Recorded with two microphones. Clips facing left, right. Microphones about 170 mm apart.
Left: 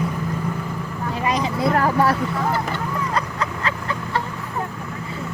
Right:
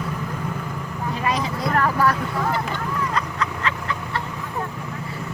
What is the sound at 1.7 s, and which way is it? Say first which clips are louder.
Vehicle: even; 30° left (ahead or behind).